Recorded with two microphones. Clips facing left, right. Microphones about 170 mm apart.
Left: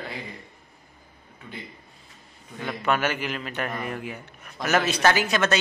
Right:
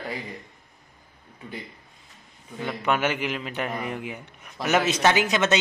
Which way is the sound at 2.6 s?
15° right (ahead or behind).